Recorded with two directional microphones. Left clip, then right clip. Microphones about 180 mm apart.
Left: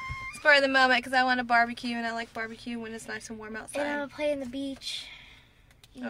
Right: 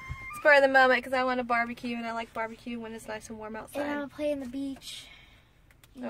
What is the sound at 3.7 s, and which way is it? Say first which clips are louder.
Child singing: left 3 dB; 20° left (ahead or behind).